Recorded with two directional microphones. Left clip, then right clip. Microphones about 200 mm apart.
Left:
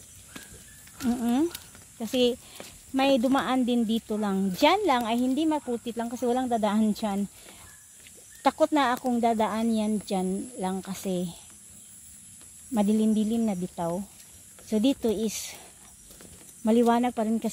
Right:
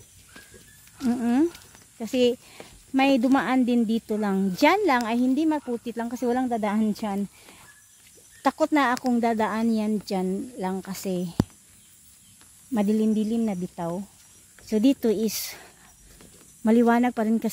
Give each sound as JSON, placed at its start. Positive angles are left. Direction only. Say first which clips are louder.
{"t": 1.0, "sound": "speech", "louder": "right 3 dB", "side_deg": -40}
{"t": 8.4, "sound": "speech", "louder": "right 1 dB", "side_deg": -25}
{"t": 12.7, "sound": "speech", "louder": "right 1 dB", "side_deg": -30}